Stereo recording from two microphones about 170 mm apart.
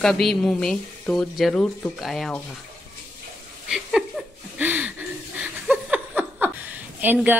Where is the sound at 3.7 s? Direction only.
5° right (ahead or behind).